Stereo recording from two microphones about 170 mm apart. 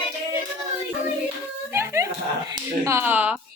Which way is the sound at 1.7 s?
15° right (ahead or behind).